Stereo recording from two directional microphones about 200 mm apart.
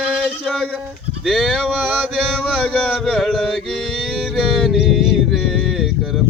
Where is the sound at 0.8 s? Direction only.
Centre (ahead or behind).